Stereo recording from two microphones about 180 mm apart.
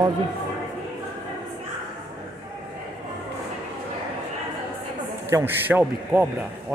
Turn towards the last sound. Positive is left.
turn(degrees=-10)  # may be behind; listen again after turning